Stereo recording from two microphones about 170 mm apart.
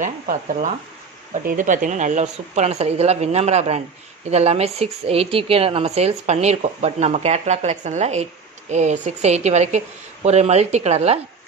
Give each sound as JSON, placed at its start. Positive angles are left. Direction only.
{"t": 0.0, "sound": "a woman's voice", "side_deg": -50}